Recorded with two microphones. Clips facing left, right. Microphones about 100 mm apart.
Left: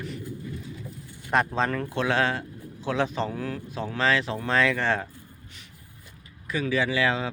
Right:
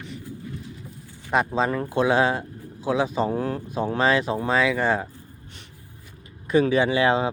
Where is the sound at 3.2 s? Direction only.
30° right (ahead or behind).